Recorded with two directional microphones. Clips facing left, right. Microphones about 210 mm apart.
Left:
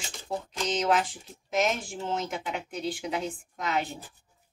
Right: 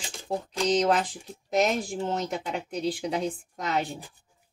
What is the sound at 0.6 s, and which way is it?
Speech, 35° right (ahead or behind).